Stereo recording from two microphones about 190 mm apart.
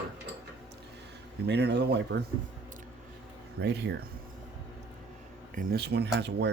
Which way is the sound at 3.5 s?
60° right (ahead or behind).